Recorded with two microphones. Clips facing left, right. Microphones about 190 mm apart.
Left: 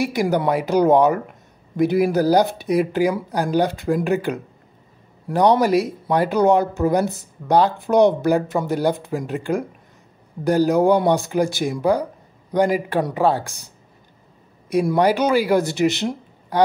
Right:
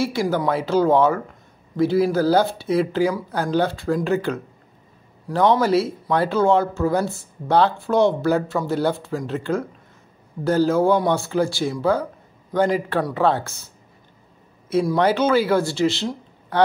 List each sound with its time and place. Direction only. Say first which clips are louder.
0.0 s speech: left 2 dB; 15° left (ahead or behind)
14.7 s speech: left 1 dB; 15° left (ahead or behind)